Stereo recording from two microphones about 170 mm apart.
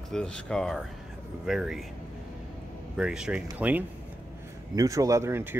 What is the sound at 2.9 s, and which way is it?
Speech, 5° right (ahead or behind).